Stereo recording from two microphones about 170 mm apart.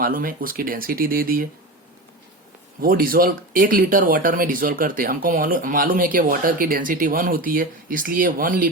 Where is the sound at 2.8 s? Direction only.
55° right (ahead or behind).